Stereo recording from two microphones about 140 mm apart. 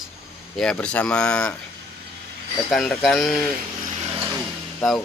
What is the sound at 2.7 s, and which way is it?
Speech, centre (ahead or behind).